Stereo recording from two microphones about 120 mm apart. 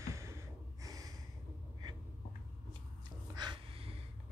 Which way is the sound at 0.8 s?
30° right (ahead or behind).